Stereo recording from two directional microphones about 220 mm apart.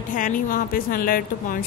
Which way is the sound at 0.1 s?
35° left (ahead or behind).